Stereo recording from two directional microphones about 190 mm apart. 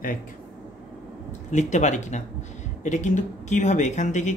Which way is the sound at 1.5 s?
40° left (ahead or behind).